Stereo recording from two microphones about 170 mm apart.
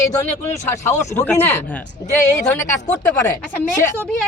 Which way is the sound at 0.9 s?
15° left (ahead or behind).